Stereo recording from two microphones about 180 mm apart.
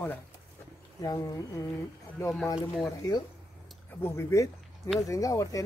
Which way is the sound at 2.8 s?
20° left (ahead or behind).